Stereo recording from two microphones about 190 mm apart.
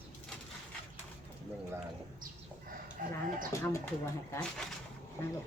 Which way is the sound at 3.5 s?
15° left (ahead or behind).